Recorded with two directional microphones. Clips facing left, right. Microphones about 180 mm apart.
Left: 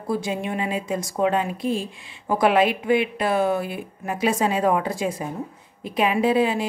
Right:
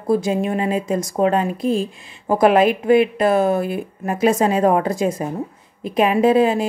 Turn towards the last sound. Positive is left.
turn(degrees=-45)  # may be behind; listen again after turning